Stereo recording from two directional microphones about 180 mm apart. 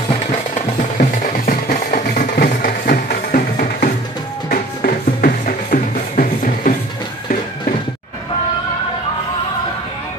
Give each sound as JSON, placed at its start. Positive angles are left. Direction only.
{"t": 0.1, "sound": "music", "side_deg": 45}